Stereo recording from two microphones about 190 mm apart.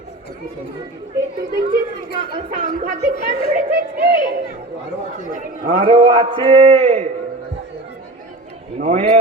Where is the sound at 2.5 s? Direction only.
40° right (ahead or behind).